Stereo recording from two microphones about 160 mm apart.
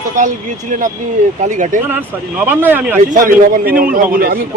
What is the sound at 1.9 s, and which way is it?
Speech, 10° right (ahead or behind).